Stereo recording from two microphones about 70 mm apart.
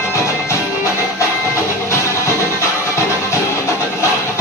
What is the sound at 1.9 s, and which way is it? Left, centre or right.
Music, left.